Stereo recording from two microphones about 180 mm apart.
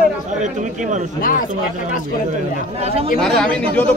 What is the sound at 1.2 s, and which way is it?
Speech, 50° left (ahead or behind).